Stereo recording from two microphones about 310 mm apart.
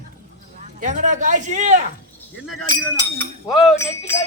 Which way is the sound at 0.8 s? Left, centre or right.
Right.